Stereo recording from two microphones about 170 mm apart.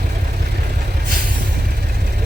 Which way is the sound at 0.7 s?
60° right (ahead or behind).